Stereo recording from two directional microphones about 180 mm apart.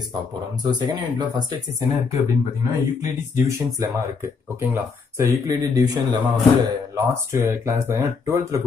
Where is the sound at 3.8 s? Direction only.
15° right (ahead or behind).